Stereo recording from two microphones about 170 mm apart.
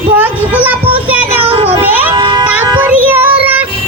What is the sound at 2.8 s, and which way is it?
Music, 10° right (ahead or behind).